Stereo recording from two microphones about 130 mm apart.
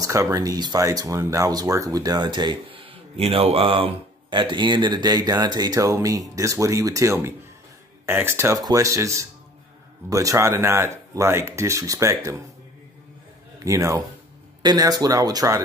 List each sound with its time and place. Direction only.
0.0 s speech: 25° right (ahead or behind)
13.7 s speech: 25° right (ahead or behind)